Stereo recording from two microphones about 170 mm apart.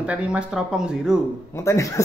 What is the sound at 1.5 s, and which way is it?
Speech, 15° left (ahead or behind).